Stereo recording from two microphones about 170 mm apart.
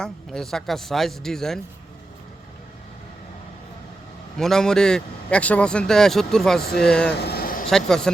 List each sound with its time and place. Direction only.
0.0 s a man's voice: 5° left (ahead or behind)
4.4 s a man's voice: 5° left (ahead or behind)
7.1 s a sound: 70° left (ahead or behind)
7.7 s a man's voice: 5° left (ahead or behind)